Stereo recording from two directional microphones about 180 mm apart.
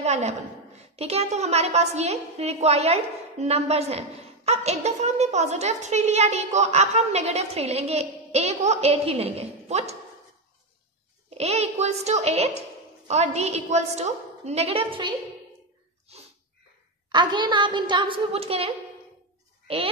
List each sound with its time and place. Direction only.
0.0 s a woman's voice: 40° right (ahead or behind)
11.2 s a woman's voice: 35° right (ahead or behind)
17.1 s a woman's voice: 25° right (ahead or behind)